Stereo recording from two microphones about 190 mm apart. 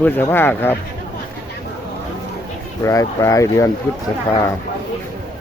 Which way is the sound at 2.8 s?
15° left (ahead or behind).